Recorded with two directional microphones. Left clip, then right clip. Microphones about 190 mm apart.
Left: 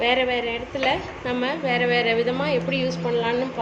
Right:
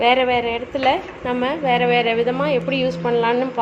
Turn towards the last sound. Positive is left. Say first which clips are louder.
# right 5 dB
turn(degrees=-35)  # may be behind; listen again after turning